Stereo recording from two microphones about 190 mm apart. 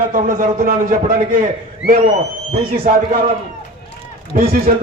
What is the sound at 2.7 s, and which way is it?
Speech, 50° right (ahead or behind).